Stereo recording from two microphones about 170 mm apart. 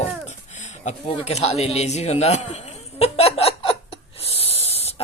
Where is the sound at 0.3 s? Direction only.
45° left (ahead or behind).